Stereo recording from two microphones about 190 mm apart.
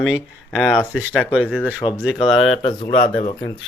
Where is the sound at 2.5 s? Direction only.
30° left (ahead or behind).